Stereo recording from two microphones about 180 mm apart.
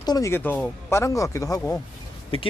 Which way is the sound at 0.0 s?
20° left (ahead or behind).